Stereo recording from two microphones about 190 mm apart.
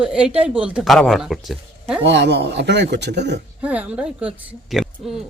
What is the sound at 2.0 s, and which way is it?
Speech, 65° right (ahead or behind).